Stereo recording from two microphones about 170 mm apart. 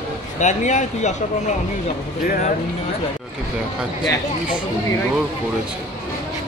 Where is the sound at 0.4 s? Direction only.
45° left (ahead or behind).